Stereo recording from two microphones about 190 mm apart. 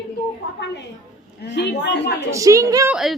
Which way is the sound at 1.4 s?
60° left (ahead or behind).